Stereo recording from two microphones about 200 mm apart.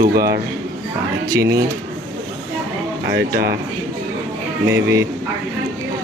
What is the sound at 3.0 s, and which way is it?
Speech, 55° right (ahead or behind).